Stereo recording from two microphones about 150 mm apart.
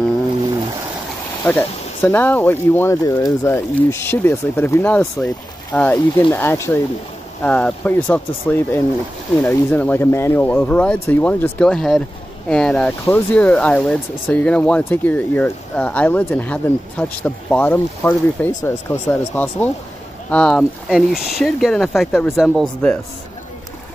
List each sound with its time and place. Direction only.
1.4 s speech: 15° left (ahead or behind); by 22.7 s 5° right (ahead or behind)